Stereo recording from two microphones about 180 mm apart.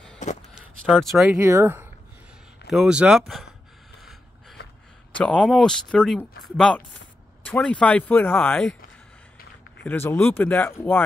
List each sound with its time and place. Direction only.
0.2 s a sound: 40° left (ahead or behind)
0.6 s speech: centre (ahead or behind)
1.4 s speech: 15° right (ahead or behind)
4.0 s a sound: centre (ahead or behind)
5.1 s speech: 5° left (ahead or behind)
9.8 s speech: 10° left (ahead or behind)